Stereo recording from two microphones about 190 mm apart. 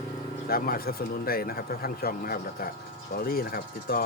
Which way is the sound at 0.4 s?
50° left (ahead or behind).